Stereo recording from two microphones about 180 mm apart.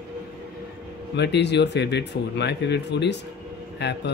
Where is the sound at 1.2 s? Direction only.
70° left (ahead or behind).